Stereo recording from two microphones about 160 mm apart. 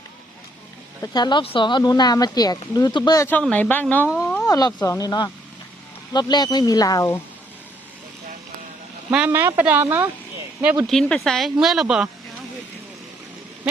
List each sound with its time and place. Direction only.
1.0 s speech: 25° left (ahead or behind); by 4.1 s 10° left (ahead or behind)
4.2 s a sound: 10° left (ahead or behind)
4.4 s speech: 25° left (ahead or behind)
9.1 s speech: 10° right (ahead or behind)
10.9 s speech: centre (ahead or behind)